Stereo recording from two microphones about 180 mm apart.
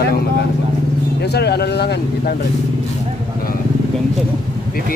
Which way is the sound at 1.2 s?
65° left (ahead or behind).